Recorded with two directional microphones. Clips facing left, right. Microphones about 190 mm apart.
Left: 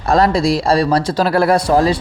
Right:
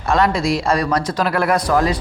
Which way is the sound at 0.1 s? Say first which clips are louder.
Left 3 dB; 35° left (ahead or behind).